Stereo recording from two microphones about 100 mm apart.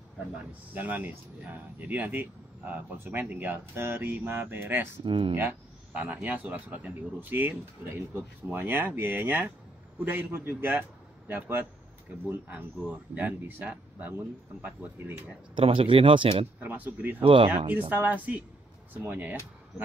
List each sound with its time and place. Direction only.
0.7 s speech: 15° right (ahead or behind)
5.0 s speech: 55° right (ahead or behind)
5.3 s a man's voice: 20° right (ahead or behind)
15.5 s speech: 65° right (ahead or behind)
16.5 s speech: 15° right (ahead or behind)
17.2 s speech: 60° right (ahead or behind)
17.6 s speech: 20° right (ahead or behind)